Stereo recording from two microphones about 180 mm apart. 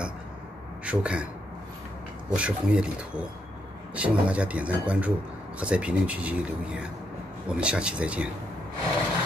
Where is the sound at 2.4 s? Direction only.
5° right (ahead or behind).